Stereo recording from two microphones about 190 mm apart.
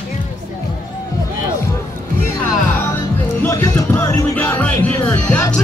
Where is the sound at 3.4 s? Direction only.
15° left (ahead or behind).